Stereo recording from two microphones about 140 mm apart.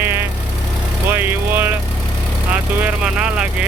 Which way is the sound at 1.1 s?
15° right (ahead or behind).